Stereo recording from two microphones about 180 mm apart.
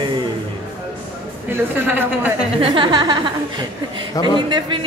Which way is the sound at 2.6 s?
30° right (ahead or behind).